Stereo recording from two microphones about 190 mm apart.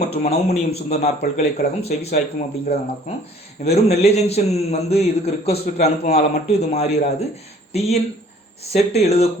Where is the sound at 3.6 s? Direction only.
35° left (ahead or behind).